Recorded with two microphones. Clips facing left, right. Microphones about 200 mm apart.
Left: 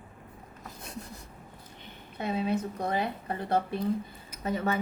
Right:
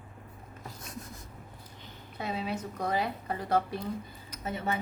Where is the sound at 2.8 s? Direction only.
25° left (ahead or behind).